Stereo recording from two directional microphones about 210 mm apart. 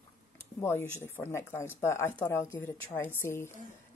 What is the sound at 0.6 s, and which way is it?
Speech, 10° left (ahead or behind).